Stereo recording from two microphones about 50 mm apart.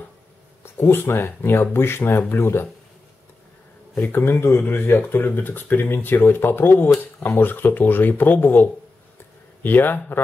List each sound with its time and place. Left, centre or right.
0.7 s speech: left
4.0 s speech: left